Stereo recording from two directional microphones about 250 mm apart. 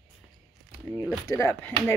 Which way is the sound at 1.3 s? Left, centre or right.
Centre.